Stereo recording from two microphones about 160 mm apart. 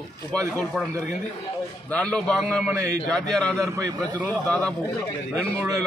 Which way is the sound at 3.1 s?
Centre (ahead or behind).